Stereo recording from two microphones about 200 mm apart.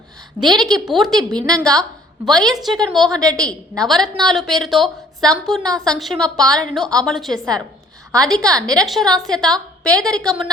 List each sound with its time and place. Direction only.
0.4 s a woman's voice: 20° right (ahead or behind)
0.9 s a woman's voice: centre (ahead or behind)